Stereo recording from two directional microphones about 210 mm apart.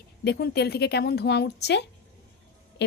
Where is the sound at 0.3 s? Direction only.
50° left (ahead or behind).